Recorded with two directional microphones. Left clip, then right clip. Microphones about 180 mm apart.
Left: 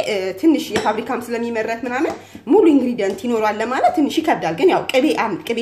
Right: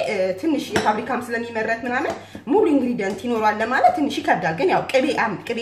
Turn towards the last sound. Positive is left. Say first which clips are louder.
# left 3 dB
turn(degrees=40)  # may be behind; listen again after turning